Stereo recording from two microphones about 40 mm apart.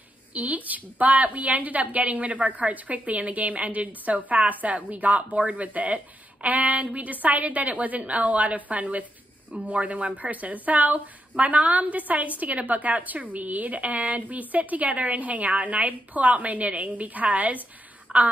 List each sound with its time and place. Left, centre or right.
0.3 s a woman's voice: right
18.1 s a woman's voice: right